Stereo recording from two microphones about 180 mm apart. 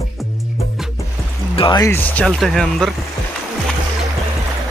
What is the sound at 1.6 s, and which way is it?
Speech, 20° left (ahead or behind).